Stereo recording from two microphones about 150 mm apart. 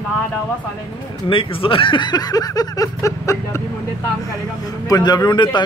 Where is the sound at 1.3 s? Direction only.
35° left (ahead or behind); by 3.6 s 20° left (ahead or behind).